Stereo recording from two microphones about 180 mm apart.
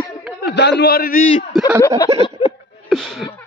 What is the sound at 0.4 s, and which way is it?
Speech, 70° left (ahead or behind).